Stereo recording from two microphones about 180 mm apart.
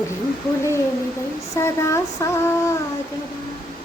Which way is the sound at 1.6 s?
15° left (ahead or behind).